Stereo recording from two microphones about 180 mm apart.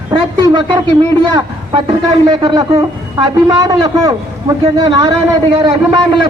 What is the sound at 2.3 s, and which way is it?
A man's voice, 25° right (ahead or behind).